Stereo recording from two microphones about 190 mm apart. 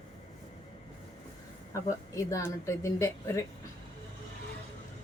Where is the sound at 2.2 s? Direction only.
15° left (ahead or behind).